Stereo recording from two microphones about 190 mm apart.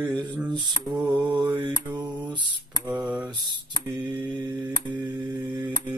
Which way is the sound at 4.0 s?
25° right (ahead or behind).